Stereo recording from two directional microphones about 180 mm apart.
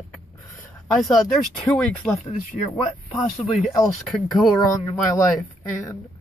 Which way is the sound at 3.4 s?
30° left (ahead or behind).